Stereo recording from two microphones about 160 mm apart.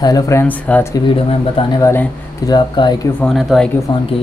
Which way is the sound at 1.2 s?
30° left (ahead or behind).